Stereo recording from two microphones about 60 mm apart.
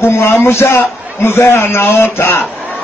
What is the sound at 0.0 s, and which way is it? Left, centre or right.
A man's voice, left.